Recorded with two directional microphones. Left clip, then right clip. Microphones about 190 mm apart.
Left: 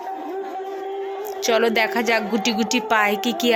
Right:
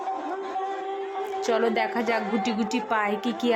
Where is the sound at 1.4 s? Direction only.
10° left (ahead or behind).